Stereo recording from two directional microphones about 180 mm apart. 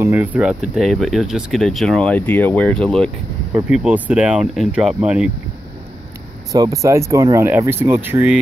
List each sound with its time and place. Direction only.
0.0 s speech: 10° right (ahead or behind)
3.6 s speech: 5° right (ahead or behind)
6.5 s speech: 20° right (ahead or behind)